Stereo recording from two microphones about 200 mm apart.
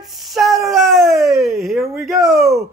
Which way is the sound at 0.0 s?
Centre (ahead or behind).